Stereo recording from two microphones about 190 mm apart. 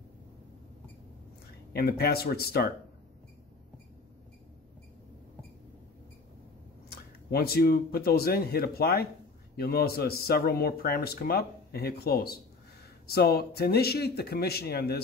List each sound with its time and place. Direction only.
1.7 s speech: 55° left (ahead or behind)
6.9 s speech: 55° left (ahead or behind)